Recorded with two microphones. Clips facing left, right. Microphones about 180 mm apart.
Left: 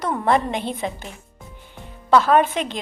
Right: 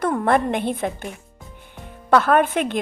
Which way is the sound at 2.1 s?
55° right (ahead or behind).